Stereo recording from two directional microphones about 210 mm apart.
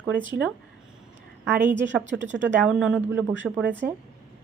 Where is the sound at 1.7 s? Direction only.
60° right (ahead or behind).